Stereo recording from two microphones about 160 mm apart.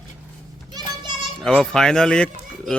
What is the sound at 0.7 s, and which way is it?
Children playing, 25° right (ahead or behind).